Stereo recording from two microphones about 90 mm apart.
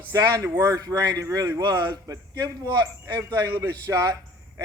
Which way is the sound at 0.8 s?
45° right (ahead or behind).